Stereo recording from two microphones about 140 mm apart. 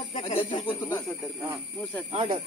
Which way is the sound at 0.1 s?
40° left (ahead or behind).